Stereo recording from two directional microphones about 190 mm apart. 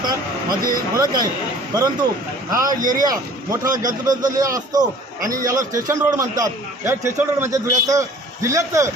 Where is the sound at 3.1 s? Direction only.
20° right (ahead or behind).